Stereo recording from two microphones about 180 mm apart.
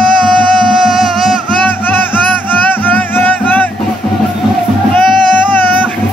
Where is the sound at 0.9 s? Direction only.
Centre (ahead or behind).